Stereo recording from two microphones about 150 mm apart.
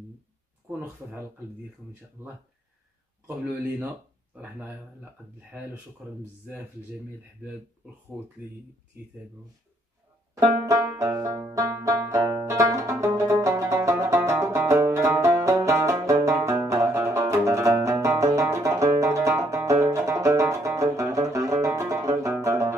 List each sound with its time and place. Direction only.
0.7 s speech: 15° right (ahead or behind)
10.4 s banjo: 15° right (ahead or behind)
18.9 s music: 20° right (ahead or behind)